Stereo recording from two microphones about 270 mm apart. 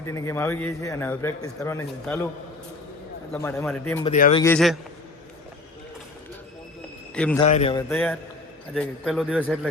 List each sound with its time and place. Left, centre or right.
0.0 s a man's voice: centre
3.3 s a man's voice: centre
4.0 s speech: left
4.4 s a man's voice: centre
7.1 s a man's voice: centre
7.3 s speech: left
7.8 s a man's voice: centre